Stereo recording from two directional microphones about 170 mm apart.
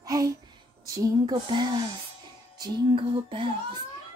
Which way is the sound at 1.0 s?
25° right (ahead or behind).